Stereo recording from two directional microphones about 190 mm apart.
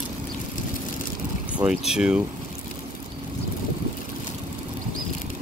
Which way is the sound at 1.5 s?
5° right (ahead or behind).